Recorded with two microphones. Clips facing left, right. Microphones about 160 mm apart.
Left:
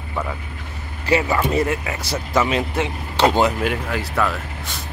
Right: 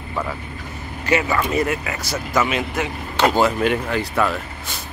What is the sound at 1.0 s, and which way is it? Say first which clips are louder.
Speech: left 1 dB; 30° left (ahead or behind).